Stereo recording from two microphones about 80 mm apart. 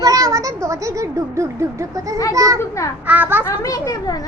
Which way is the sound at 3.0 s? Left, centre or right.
Right.